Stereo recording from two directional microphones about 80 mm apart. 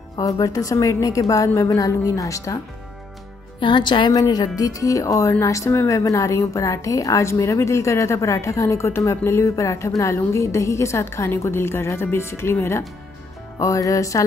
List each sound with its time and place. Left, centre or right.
0.2 s a woman's voice: left
3.5 s a woman's voice: left
4.1 s a woman's voice: left
13.6 s a woman's voice: left